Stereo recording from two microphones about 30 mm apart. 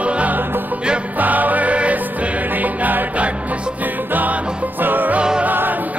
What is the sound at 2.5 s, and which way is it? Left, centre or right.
Music, right.